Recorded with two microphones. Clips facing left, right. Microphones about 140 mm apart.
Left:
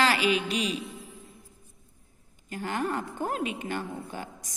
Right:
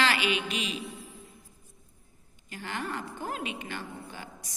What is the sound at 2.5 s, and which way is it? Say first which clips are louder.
A woman's voice: left 6 dB; 40° left (ahead or behind).